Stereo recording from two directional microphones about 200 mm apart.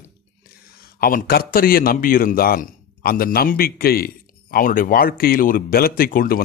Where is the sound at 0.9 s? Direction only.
50° left (ahead or behind).